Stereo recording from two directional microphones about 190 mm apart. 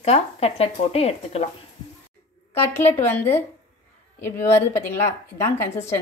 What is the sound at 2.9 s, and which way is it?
A woman's voice, 10° left (ahead or behind).